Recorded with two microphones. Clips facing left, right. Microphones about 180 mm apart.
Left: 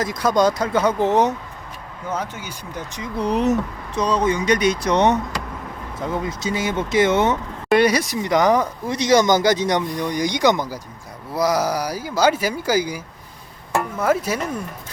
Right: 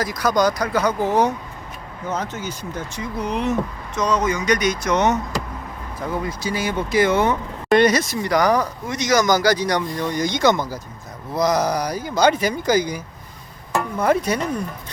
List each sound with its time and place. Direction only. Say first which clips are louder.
0.0 s speech: left 1 dB; 25° left (ahead or behind)
2.0 s speech: right 1 dB; 10° left (ahead or behind)
3.2 s speech: left 3 dB; 35° left (ahead or behind); by 7.3 s 20° left (ahead or behind)
7.7 s speech: right 1 dB; 10° left (ahead or behind)
14.0 s speech: right 2 dB; 5° left (ahead or behind)